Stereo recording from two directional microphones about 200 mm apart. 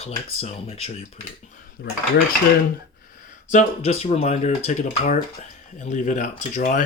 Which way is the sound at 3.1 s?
40° left (ahead or behind).